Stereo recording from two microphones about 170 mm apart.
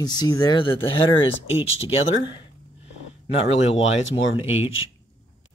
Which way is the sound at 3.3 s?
40° left (ahead or behind).